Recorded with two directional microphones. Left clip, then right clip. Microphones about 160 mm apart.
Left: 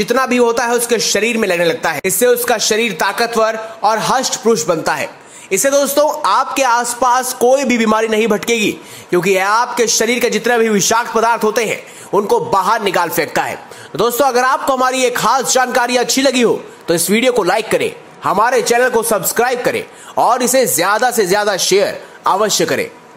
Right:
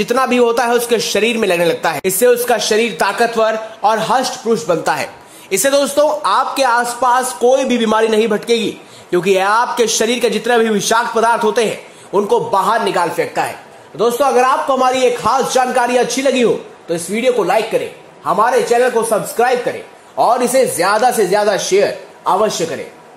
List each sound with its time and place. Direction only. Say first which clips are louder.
0.0 s a man's voice: even; centre (ahead or behind)
2.3 s a man's voice: right 1 dB; 15° left (ahead or behind)
3.8 s a man's voice: even; centre (ahead or behind)
5.5 s a man's voice: left 1 dB; 15° left (ahead or behind)
9.2 s a man's voice: right 1 dB; centre (ahead or behind); by 14.3 s 35° left (ahead or behind)
14.3 s a man's voice: right 1 dB; 25° left (ahead or behind)
20.2 s speech: even; 25° left (ahead or behind)